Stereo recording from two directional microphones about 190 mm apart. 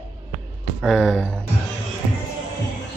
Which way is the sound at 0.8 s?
Centre (ahead or behind).